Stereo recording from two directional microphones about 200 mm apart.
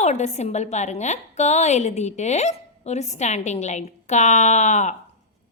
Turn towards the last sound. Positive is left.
turn(degrees=35)  # may be behind; listen again after turning